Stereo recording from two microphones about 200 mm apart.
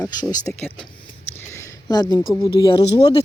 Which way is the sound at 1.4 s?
15° left (ahead or behind).